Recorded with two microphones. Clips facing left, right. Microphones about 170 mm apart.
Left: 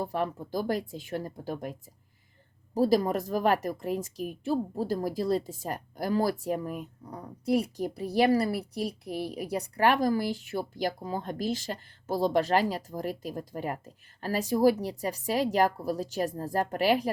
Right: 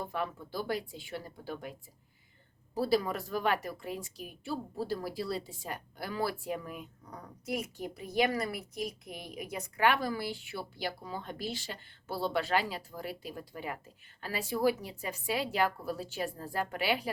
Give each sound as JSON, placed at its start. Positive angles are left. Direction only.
{"t": 0.0, "sound": "a woman's voice", "side_deg": 35}
{"t": 2.7, "sound": "a woman's voice", "side_deg": 40}